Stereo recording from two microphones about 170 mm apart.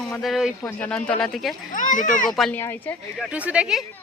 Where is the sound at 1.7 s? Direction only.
50° left (ahead or behind).